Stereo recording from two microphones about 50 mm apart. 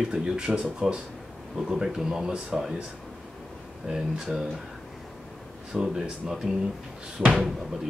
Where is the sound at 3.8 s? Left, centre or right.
Centre.